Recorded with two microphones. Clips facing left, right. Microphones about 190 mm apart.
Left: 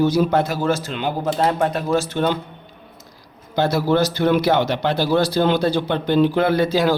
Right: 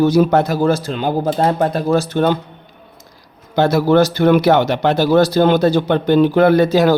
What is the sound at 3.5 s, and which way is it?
Speech, 55° right (ahead or behind).